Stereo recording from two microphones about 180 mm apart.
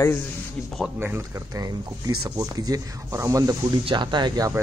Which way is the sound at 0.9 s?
10° right (ahead or behind).